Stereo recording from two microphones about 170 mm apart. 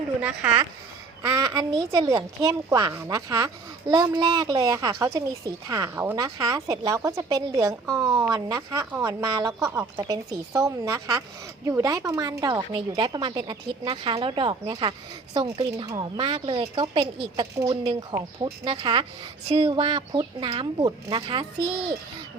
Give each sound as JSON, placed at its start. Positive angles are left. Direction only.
{"t": 0.2, "sound": "speech", "side_deg": -10}
{"t": 1.2, "sound": "a woman's voice", "side_deg": -20}